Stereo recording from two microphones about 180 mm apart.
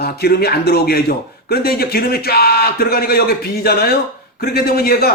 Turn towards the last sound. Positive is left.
turn(degrees=55)  # may be behind; listen again after turning